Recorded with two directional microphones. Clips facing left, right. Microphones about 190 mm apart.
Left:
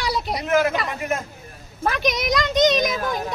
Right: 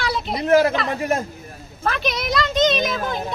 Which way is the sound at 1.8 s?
15° left (ahead or behind).